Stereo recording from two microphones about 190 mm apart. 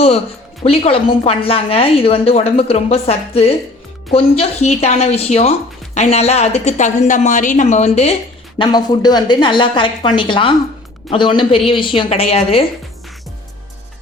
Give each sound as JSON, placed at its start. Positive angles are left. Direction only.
{"t": 0.6, "sound": "speech", "side_deg": 30}
{"t": 8.5, "sound": "a woman's voice", "side_deg": 25}